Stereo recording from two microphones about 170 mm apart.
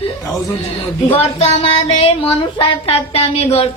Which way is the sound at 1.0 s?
35° left (ahead or behind).